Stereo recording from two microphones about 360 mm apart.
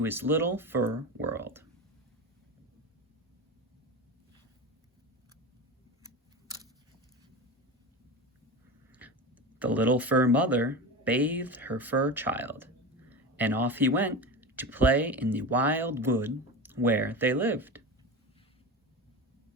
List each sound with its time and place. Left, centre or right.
0.0 s speech: centre
1.2 s a sound: centre
8.9 s tick-tock: centre
9.6 s speech: centre